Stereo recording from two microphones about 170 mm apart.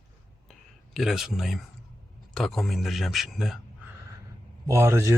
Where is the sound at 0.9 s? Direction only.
Centre (ahead or behind).